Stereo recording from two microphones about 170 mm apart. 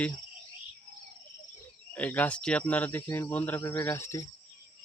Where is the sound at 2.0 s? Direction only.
10° left (ahead or behind).